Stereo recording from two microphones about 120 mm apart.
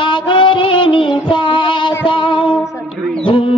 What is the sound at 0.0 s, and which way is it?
Music, 45° left (ahead or behind).